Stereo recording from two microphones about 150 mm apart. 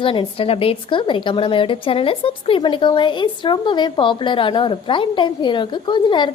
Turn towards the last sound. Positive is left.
turn(degrees=30)  # may be behind; listen again after turning